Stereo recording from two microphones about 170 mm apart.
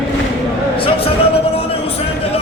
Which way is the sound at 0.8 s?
35° left (ahead or behind).